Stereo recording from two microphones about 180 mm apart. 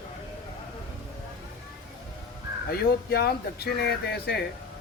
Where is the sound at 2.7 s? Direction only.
60° left (ahead or behind).